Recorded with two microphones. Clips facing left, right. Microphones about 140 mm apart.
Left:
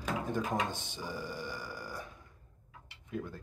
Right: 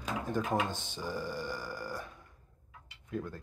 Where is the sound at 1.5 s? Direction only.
45° right (ahead or behind).